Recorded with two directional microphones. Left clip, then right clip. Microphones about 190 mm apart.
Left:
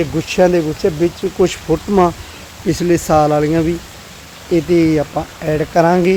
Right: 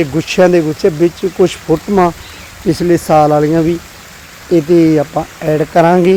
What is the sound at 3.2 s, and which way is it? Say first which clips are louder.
Speech: right 4 dB; 15° right (ahead or behind).